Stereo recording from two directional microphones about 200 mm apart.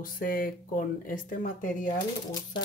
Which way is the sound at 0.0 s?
45° left (ahead or behind).